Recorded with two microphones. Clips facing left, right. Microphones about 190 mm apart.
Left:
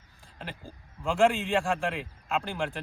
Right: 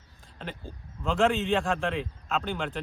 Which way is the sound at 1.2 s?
Centre (ahead or behind).